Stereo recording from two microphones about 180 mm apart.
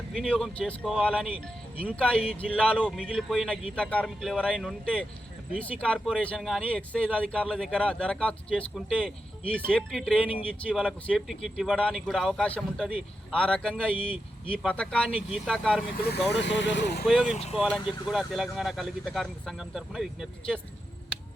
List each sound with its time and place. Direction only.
0.1 s speech: centre (ahead or behind)
16.0 s speech: 65° left (ahead or behind)
17.1 s speech: centre (ahead or behind)
17.3 s speech: 35° left (ahead or behind)
18.0 s speech: centre (ahead or behind)